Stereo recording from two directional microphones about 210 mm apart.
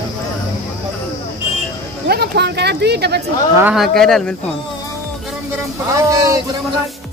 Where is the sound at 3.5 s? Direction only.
5° right (ahead or behind).